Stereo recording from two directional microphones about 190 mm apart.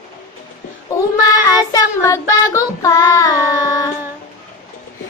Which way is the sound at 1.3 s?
20° left (ahead or behind).